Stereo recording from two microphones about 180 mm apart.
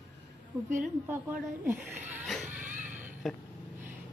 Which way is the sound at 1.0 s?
10° right (ahead or behind).